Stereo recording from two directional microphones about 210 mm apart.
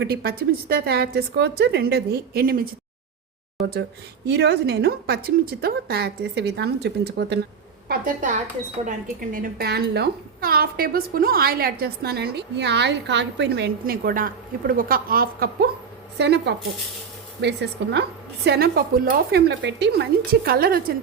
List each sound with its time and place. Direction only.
0.0 s a woman's voice: 50° right (ahead or behind)
4.3 s a woman's voice: 55° right (ahead or behind)
7.9 s a woman's voice: 40° right (ahead or behind)
9.3 s a woman's voice: 45° right (ahead or behind)